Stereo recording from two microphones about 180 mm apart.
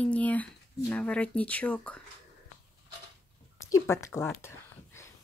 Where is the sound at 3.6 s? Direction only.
15° left (ahead or behind).